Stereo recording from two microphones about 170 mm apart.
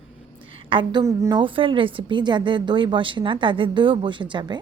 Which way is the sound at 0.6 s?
30° right (ahead or behind).